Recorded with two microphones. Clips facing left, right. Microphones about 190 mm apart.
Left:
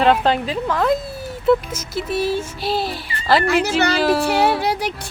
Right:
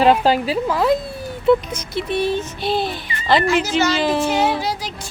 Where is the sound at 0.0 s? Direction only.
5° right (ahead or behind).